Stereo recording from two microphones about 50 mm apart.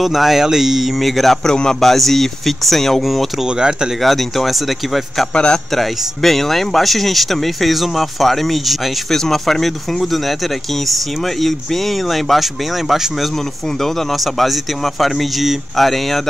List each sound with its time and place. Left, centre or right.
0.0 s speech: centre
3.4 s speech: centre
4.0 s speech: centre
5.3 s a man's voice: centre
5.8 s speech: centre
11.4 s speech: centre